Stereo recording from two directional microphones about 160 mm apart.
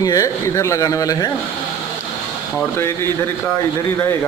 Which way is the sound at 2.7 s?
15° left (ahead or behind).